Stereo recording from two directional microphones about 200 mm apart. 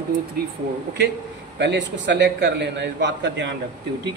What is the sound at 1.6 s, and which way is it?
A man's voice, 60° right (ahead or behind).